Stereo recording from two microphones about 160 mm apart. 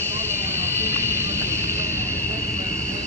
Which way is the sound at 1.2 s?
15° right (ahead or behind).